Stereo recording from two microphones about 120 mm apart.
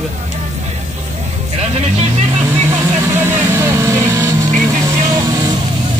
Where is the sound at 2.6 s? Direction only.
20° right (ahead or behind).